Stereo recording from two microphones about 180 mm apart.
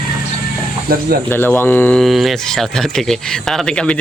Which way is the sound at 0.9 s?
55° right (ahead or behind).